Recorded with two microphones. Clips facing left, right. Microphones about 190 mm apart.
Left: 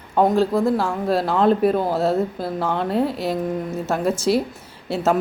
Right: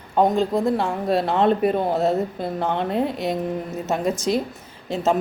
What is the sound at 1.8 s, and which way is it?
Speech, 20° right (ahead or behind).